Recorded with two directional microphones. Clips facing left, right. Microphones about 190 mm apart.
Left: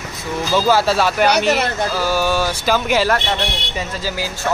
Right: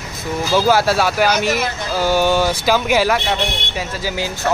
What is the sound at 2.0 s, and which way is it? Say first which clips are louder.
Speech: right 5 dB; 20° right (ahead or behind).